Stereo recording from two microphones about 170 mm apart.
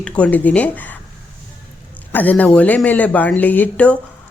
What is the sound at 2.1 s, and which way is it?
A woman's voice, 10° left (ahead or behind).